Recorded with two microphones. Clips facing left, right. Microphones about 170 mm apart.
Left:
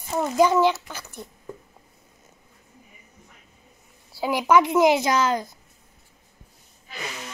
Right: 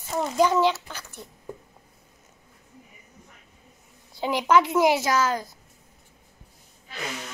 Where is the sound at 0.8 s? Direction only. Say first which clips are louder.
Left 2 dB; 10° left (ahead or behind).